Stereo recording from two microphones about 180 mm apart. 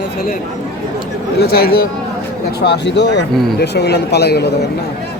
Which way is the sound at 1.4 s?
60° left (ahead or behind).